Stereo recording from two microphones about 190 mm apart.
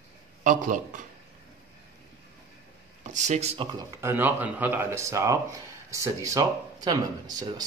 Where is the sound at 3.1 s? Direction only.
40° right (ahead or behind).